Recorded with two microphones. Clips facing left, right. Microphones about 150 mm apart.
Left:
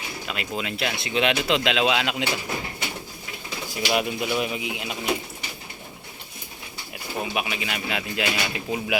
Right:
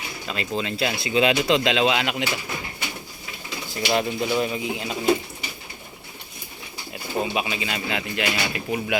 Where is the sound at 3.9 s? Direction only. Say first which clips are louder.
Right 2 dB; 10° left (ahead or behind).